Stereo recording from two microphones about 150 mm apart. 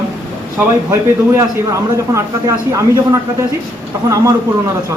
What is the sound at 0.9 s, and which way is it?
A man's voice, 20° right (ahead or behind).